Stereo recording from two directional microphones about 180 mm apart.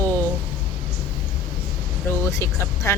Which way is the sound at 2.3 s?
15° left (ahead or behind).